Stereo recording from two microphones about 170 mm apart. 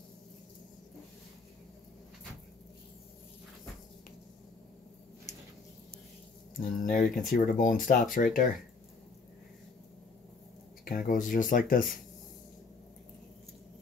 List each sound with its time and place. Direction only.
6.6 s speech: 50° left (ahead or behind)
10.9 s speech: 55° left (ahead or behind)